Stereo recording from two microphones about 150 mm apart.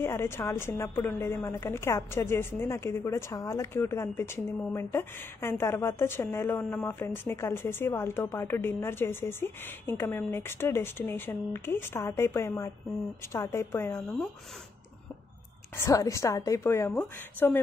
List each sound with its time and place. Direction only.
0.0 s speech: 15° left (ahead or behind)
15.8 s a woman's voice: 20° left (ahead or behind)